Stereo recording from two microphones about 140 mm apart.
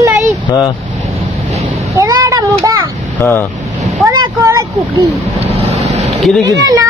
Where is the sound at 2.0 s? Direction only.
25° right (ahead or behind).